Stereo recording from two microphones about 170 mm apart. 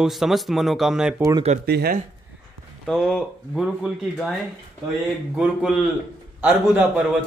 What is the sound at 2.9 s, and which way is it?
A man's voice, centre (ahead or behind).